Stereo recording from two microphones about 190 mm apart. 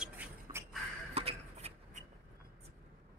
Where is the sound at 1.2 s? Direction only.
30° right (ahead or behind).